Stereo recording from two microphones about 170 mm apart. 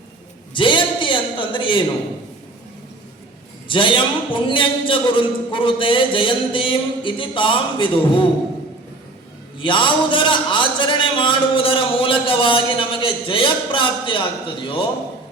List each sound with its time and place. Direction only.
0.5 s a sound: 30° left (ahead or behind)
3.7 s a man's voice: 30° left (ahead or behind)
9.6 s a man's voice: 30° left (ahead or behind)